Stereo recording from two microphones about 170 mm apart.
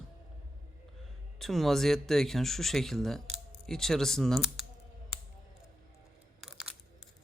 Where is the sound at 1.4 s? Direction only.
Centre (ahead or behind).